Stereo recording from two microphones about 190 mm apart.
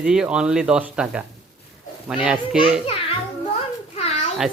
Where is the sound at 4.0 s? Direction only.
35° left (ahead or behind).